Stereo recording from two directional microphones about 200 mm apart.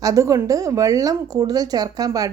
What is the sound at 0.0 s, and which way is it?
Speech, 15° right (ahead or behind).